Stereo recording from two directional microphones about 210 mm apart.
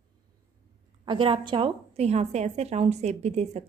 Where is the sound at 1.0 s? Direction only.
25° right (ahead or behind).